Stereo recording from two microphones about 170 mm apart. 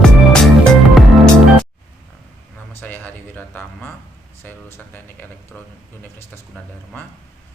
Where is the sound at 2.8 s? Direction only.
10° left (ahead or behind).